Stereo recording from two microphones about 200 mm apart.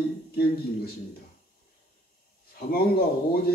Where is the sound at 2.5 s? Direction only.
50° left (ahead or behind).